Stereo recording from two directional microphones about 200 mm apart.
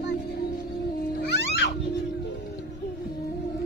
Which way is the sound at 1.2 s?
55° left (ahead or behind).